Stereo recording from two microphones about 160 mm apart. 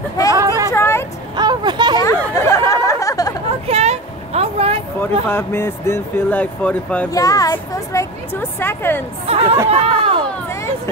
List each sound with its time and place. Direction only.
0.3 s a sound: 20° right (ahead or behind)
0.7 s vehicle: 15° left (ahead or behind)
1.3 s vehicle: 25° right (ahead or behind)
2.0 s chatter: 20° left (ahead or behind)
3.6 s vehicle: 40° right (ahead or behind)
5.3 s speech: 15° left (ahead or behind)
7.1 s speech: 20° left (ahead or behind)
9.2 s speech: 40° right (ahead or behind)